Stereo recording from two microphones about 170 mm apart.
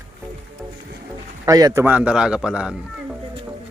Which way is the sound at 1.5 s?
20° right (ahead or behind).